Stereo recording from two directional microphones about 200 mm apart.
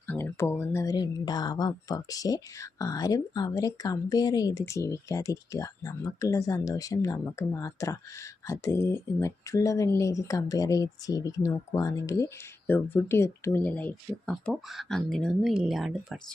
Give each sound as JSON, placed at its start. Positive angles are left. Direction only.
{"t": 0.1, "sound": "speech", "side_deg": 10}